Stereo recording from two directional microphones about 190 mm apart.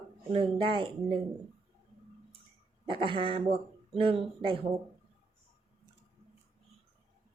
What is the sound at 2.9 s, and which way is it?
Speech, 25° right (ahead or behind).